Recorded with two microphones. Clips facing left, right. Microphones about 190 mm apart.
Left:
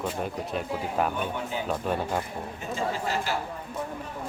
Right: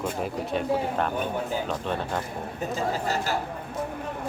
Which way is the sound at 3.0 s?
40° right (ahead or behind).